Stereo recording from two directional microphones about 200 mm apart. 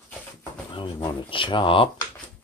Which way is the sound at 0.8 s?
25° left (ahead or behind).